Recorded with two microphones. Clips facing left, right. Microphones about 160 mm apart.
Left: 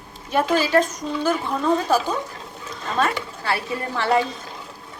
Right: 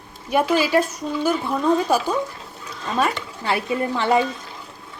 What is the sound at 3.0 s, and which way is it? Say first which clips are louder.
Speech: even; 20° right (ahead or behind).